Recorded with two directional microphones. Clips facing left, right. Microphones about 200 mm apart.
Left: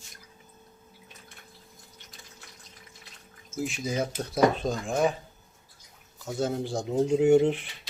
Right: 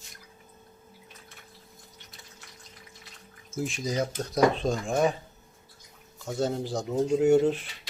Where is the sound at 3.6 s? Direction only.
5° left (ahead or behind).